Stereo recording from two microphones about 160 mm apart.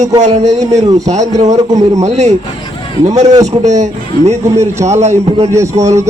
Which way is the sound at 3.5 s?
45° right (ahead or behind).